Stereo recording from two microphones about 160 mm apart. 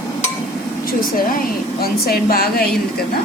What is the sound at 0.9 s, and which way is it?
Speech, 65° left (ahead or behind).